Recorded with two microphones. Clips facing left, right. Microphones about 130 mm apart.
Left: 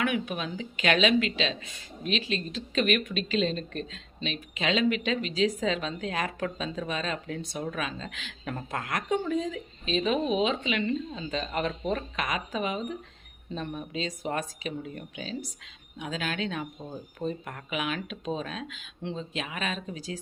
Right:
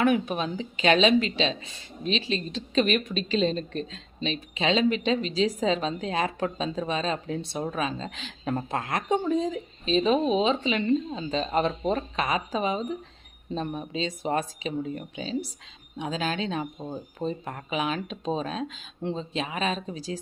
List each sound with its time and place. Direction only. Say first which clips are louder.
0.0 s a woman's voice: right 6 dB; 40° right (ahead or behind)